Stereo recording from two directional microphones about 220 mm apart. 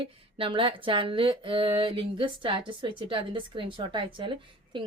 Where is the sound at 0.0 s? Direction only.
25° right (ahead or behind).